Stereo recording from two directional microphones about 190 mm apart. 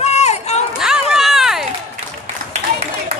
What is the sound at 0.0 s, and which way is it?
Run, 35° left (ahead or behind).